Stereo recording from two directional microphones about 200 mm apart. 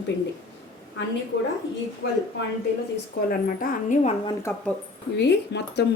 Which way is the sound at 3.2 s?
45° left (ahead or behind).